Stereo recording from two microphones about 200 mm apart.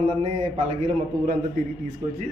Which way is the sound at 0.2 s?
35° right (ahead or behind).